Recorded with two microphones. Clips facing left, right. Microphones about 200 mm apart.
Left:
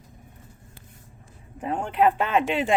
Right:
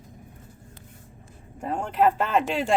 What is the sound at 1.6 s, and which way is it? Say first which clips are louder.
Speech: left 1 dB; centre (ahead or behind).